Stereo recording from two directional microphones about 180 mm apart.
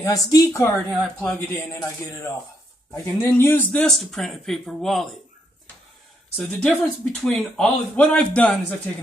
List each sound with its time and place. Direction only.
0.0 s a woman's voice: 20° left (ahead or behind)
2.9 s speech: 15° left (ahead or behind)
6.3 s speech: 5° left (ahead or behind)